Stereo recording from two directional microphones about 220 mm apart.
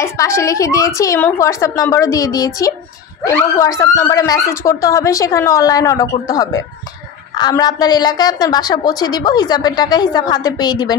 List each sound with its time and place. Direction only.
0.0 s a woman's voice: 15° left (ahead or behind)